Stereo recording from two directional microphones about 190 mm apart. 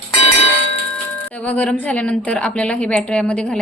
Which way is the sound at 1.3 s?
5° left (ahead or behind).